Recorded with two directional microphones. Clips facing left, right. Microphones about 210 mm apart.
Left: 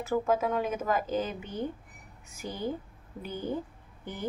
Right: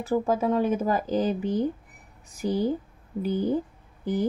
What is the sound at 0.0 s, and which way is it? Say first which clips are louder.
A woman's voice: right 3 dB; 35° right (ahead or behind).